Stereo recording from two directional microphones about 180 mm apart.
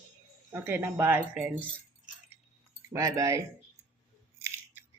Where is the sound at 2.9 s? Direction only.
20° right (ahead or behind).